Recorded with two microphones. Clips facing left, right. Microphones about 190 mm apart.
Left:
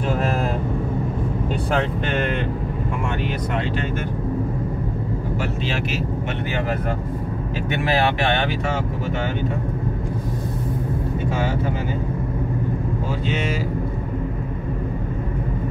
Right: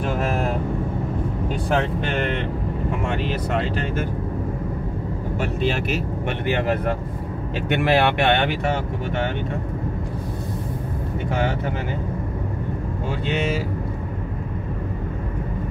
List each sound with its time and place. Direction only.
7.7 s speech: 60° right (ahead or behind)